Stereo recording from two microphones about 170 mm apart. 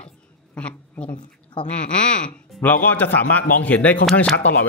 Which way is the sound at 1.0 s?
30° left (ahead or behind).